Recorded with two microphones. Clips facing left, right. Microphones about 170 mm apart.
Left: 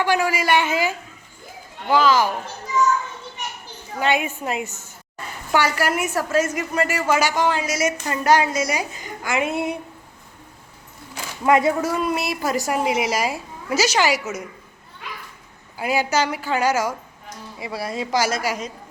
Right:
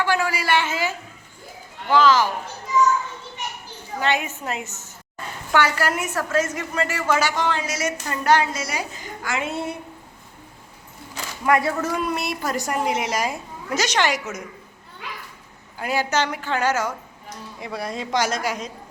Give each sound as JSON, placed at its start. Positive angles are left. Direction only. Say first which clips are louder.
{"t": 0.0, "sound": "a woman's voice", "louder": "left 2 dB", "side_deg": 15}
{"t": 4.0, "sound": "a woman's voice", "louder": "left 2 dB", "side_deg": 10}
{"t": 11.4, "sound": "speech", "louder": "left 3 dB", "side_deg": 20}
{"t": 11.8, "sound": "a woman's voice", "louder": "left 2 dB", "side_deg": 5}
{"t": 15.8, "sound": "a woman's voice", "louder": "left 2 dB", "side_deg": 10}